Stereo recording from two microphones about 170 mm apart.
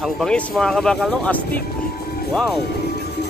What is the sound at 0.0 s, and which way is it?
Speech, 5° left (ahead or behind).